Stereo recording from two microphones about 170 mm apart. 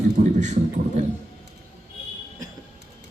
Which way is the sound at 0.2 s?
45° right (ahead or behind).